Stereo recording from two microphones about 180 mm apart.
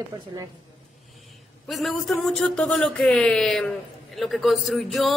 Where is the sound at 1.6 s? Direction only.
Centre (ahead or behind).